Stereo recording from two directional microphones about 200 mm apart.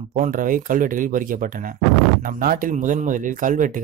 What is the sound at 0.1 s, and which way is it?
A man's voice, 40° right (ahead or behind).